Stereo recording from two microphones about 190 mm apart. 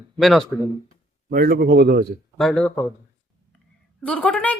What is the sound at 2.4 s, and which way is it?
Speech, 5° left (ahead or behind).